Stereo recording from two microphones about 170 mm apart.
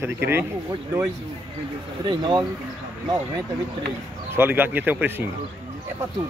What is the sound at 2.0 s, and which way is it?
Speech, 25° right (ahead or behind).